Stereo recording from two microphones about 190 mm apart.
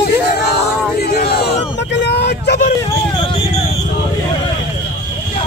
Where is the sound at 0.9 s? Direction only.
55° left (ahead or behind).